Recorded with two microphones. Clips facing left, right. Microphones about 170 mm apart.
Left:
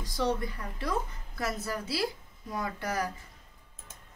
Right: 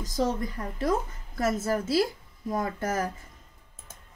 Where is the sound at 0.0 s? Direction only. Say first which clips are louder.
Right 3 dB; 45° right (ahead or behind).